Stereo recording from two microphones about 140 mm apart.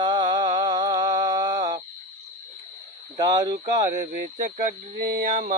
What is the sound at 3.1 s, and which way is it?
Mantra, 30° right (ahead or behind).